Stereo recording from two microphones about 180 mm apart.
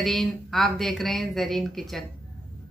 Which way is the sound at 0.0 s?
Centre (ahead or behind).